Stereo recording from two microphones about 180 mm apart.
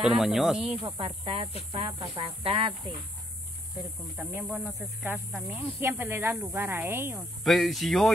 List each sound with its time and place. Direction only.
0.0 s speech: centre (ahead or behind)
0.7 s speech: 30° right (ahead or behind)
4.2 s speech: 5° right (ahead or behind)
7.4 s speech: centre (ahead or behind)